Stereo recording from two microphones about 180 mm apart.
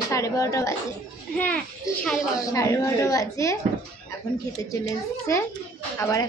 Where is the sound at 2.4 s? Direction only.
20° left (ahead or behind).